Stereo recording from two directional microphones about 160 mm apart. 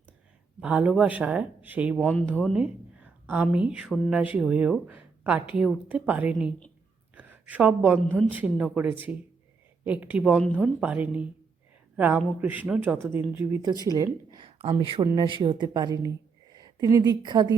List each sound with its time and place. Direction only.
0.6 s speech: 5° right (ahead or behind)
2.0 s speech: 5° left (ahead or behind)
2.5 s a woman's voice: 5° right (ahead or behind)
7.2 s a sound: 10° right (ahead or behind)
8.3 s speech: 10° right (ahead or behind)
13.8 s speech: 25° right (ahead or behind)